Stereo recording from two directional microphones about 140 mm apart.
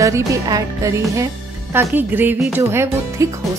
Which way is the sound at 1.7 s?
15° right (ahead or behind).